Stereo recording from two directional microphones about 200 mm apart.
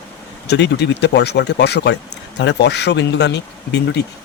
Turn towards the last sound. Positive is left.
turn(degrees=60)  # may be behind; listen again after turning